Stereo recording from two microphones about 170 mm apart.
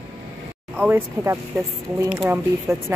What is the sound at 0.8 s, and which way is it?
A woman's voice, 15° right (ahead or behind).